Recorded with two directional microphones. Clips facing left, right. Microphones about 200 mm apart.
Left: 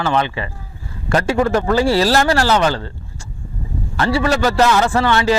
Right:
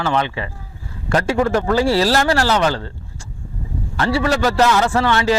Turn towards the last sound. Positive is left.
turn(degrees=20)  # may be behind; listen again after turning